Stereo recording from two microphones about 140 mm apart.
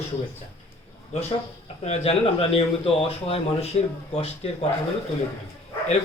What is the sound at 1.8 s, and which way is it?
Speech, 45° left (ahead or behind).